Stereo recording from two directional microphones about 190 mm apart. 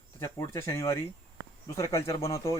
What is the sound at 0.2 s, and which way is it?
Speech, 15° left (ahead or behind).